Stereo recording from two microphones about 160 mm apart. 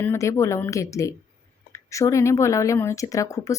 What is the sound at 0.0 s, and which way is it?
A woman's voice, 15° left (ahead or behind).